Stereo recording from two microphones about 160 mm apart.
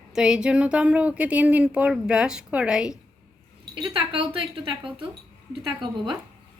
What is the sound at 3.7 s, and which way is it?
Speech, 30° right (ahead or behind).